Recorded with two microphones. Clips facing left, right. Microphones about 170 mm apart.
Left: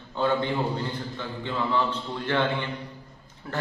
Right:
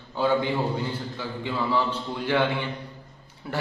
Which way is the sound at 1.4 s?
10° right (ahead or behind).